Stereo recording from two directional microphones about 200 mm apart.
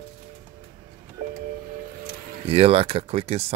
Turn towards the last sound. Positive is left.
turn(degrees=-30)  # may be behind; listen again after turning